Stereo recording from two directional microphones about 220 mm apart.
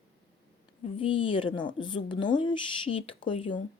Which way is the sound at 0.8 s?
25° left (ahead or behind).